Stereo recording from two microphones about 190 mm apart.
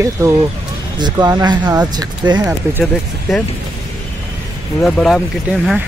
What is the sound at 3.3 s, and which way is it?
Speech, centre (ahead or behind).